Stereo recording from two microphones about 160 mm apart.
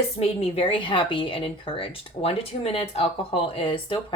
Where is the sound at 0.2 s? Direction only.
40° left (ahead or behind).